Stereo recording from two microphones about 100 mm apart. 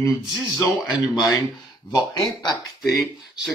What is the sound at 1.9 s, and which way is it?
Speech, 45° left (ahead or behind).